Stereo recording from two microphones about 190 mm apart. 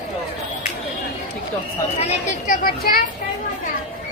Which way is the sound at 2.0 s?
40° left (ahead or behind).